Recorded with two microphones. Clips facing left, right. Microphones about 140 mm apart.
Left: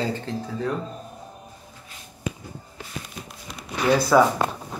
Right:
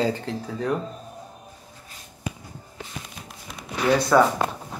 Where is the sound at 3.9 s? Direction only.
5° left (ahead or behind).